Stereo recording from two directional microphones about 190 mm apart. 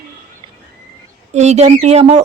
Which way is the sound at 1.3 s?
35° right (ahead or behind).